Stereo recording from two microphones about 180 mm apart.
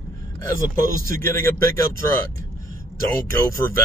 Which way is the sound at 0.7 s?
15° left (ahead or behind).